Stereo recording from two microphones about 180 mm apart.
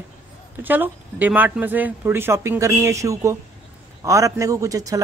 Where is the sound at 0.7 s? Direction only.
10° right (ahead or behind).